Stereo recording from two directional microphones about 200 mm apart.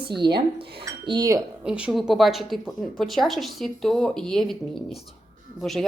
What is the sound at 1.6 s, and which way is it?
A woman's voice, 5° right (ahead or behind).